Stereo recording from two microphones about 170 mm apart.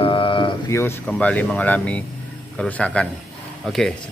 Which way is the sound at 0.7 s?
15° left (ahead or behind).